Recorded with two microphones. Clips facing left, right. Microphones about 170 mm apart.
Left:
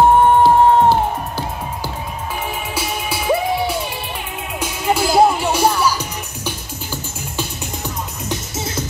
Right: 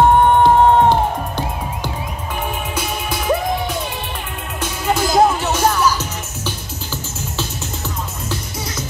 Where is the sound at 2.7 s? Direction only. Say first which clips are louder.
Even; 10° left (ahead or behind).